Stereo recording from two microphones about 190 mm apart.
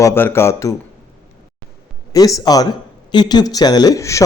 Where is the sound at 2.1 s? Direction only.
20° left (ahead or behind).